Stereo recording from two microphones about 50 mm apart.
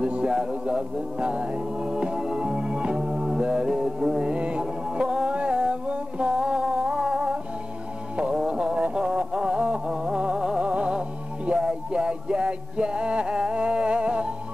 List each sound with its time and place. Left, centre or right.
0.0 s music: centre
8.4 s music: centre